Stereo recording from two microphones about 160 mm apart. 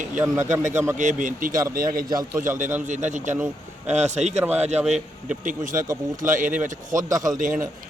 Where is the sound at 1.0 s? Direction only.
50° right (ahead or behind).